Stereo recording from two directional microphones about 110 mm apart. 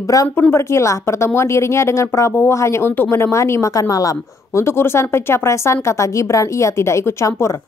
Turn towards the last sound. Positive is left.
turn(degrees=25)  # may be behind; listen again after turning